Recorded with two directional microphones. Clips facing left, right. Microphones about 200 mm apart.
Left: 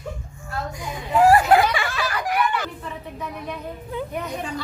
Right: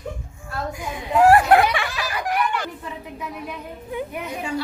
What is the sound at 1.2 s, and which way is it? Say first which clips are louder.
Snicker: right 1 dB; centre (ahead or behind).